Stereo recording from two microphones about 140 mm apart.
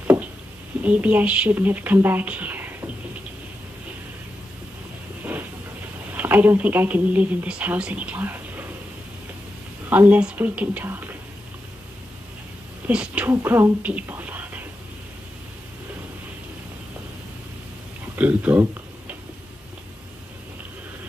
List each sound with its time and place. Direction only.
0.0 s a sound: 15° right (ahead or behind)
0.8 s speech: 10° right (ahead or behind)
6.1 s speech: 15° right (ahead or behind)
9.8 s speech: 10° right (ahead or behind)
12.8 s speech: 10° right (ahead or behind)
18.1 s a sound: 10° right (ahead or behind)